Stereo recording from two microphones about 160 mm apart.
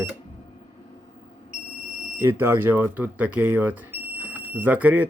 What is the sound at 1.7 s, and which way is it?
Smoke detector, 5° right (ahead or behind).